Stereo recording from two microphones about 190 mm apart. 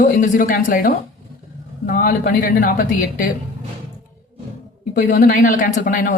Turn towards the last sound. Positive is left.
turn(degrees=45)  # may be behind; listen again after turning